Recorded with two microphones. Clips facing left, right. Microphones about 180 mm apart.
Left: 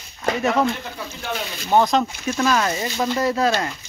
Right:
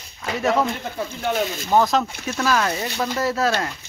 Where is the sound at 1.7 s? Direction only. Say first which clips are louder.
Left 1 dB; centre (ahead or behind).